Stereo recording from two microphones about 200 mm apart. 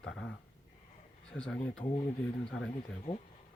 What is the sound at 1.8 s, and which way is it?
Speech, 25° left (ahead or behind).